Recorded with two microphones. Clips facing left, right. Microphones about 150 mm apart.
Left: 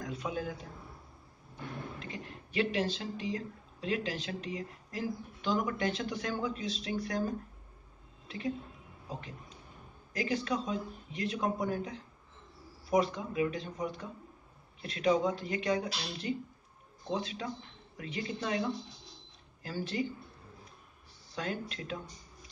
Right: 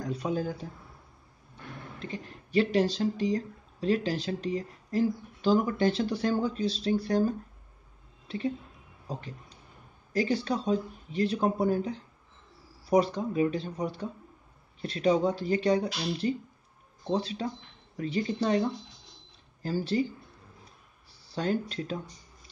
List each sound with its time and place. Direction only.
0.0 s speech: 35° right (ahead or behind)
2.0 s speech: 35° right (ahead or behind)
8.3 s a woman's voice: 30° right (ahead or behind)
19.6 s speech: 35° right (ahead or behind)
21.3 s speech: 35° right (ahead or behind)